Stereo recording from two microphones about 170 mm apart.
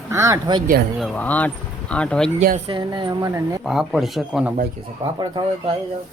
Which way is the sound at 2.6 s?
30° right (ahead or behind).